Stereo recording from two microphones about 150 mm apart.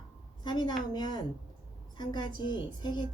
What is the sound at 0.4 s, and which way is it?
A woman's voice, 30° left (ahead or behind).